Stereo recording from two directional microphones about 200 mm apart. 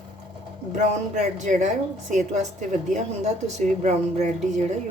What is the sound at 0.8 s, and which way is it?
A woman's voice, 35° right (ahead or behind).